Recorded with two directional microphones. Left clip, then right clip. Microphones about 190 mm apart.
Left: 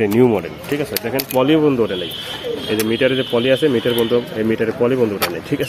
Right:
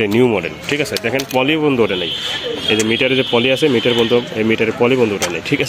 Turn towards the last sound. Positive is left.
turn(degrees=-20)  # may be behind; listen again after turning